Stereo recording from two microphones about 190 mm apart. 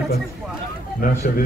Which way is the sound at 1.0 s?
50° left (ahead or behind).